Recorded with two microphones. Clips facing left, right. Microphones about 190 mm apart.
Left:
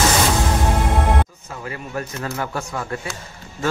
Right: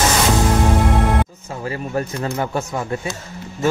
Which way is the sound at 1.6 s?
30° right (ahead or behind).